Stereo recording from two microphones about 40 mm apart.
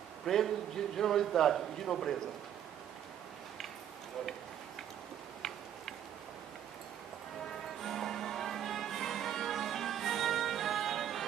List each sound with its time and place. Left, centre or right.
0.3 s a man's voice: centre
7.8 s music: centre